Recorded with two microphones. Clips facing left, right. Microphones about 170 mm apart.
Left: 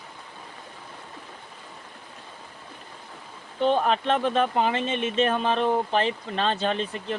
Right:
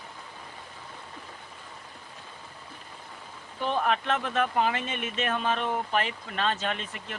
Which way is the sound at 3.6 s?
30° left (ahead or behind).